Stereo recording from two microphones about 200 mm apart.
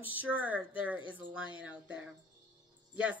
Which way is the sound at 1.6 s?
5° right (ahead or behind).